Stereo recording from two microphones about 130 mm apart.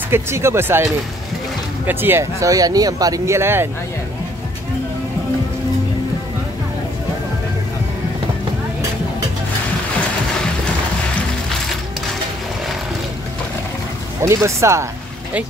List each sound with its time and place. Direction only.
0.1 s speech: 20° right (ahead or behind)
1.9 s speech: 15° right (ahead or behind)
14.2 s speech: 20° right (ahead or behind)